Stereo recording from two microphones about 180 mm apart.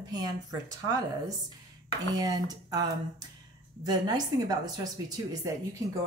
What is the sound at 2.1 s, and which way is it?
Speech, 20° right (ahead or behind).